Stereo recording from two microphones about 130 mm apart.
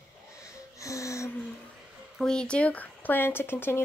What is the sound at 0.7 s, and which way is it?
Music, 25° left (ahead or behind).